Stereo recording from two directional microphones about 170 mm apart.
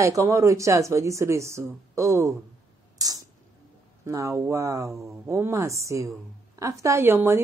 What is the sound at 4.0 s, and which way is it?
Speech, 20° right (ahead or behind).